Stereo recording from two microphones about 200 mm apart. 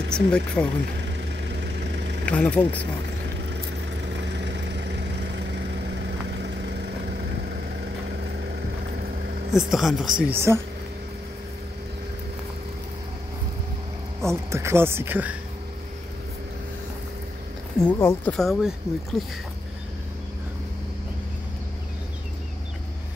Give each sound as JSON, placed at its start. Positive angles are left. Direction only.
{"t": 0.1, "sound": "speech", "side_deg": 5}
{"t": 1.5, "sound": "vehicle", "side_deg": -60}
{"t": 2.2, "sound": "speech", "side_deg": 5}
{"t": 3.4, "sound": "vehicle", "side_deg": -60}
{"t": 9.5, "sound": "speech", "side_deg": 0}
{"t": 10.2, "sound": "speech", "side_deg": -10}
{"t": 14.2, "sound": "speech", "side_deg": -15}
{"t": 17.7, "sound": "speech", "side_deg": 10}